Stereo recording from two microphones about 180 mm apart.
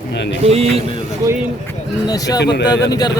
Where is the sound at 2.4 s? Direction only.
70° left (ahead or behind).